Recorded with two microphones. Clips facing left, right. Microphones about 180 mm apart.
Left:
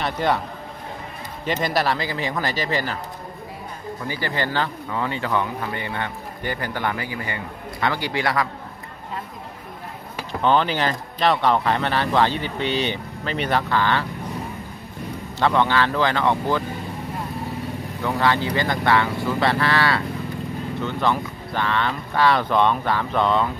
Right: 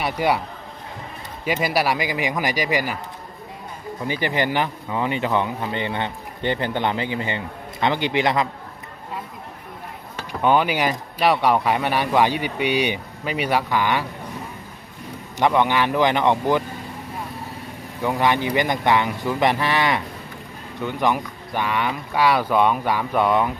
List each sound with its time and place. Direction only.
0.0 s speech: 10° right (ahead or behind)
1.4 s speech: 10° right (ahead or behind)
4.1 s speech: 20° right (ahead or behind)
10.4 s speech: 10° right (ahead or behind)
15.3 s speech: 15° right (ahead or behind)
18.0 s speech: 15° right (ahead or behind)